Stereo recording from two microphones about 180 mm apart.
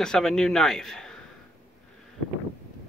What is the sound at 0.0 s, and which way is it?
Speech, 5° left (ahead or behind).